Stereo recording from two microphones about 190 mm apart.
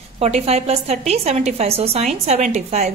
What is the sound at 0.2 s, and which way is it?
Speech, 35° right (ahead or behind).